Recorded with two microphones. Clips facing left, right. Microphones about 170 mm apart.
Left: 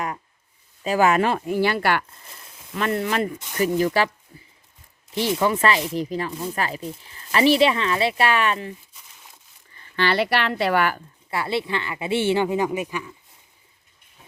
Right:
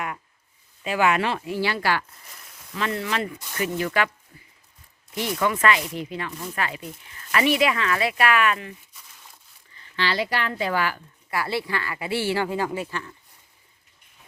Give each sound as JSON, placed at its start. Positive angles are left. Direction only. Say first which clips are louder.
{"t": 0.9, "sound": "speech", "louder": "left 3 dB", "side_deg": 40}
{"t": 2.5, "sound": "a sound", "louder": "left 2 dB", "side_deg": 25}
{"t": 2.7, "sound": "speech", "louder": "left 4 dB", "side_deg": 50}
{"t": 4.0, "sound": "speech", "louder": "right 1 dB", "side_deg": 35}
{"t": 5.1, "sound": "speech", "louder": "left 3 dB", "side_deg": 30}
{"t": 9.7, "sound": "speech", "louder": "left 4 dB", "side_deg": 50}
{"t": 11.3, "sound": "speech", "louder": "left 2 dB", "side_deg": 25}